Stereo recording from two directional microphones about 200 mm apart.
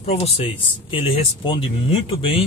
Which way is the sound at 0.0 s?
30° left (ahead or behind).